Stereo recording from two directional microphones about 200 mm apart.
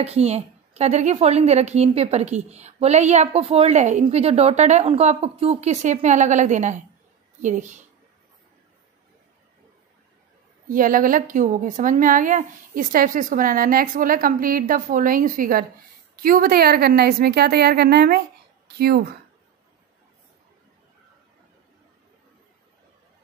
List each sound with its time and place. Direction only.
0.0 s a woman's voice: 30° right (ahead or behind)
10.7 s a woman's voice: 45° right (ahead or behind)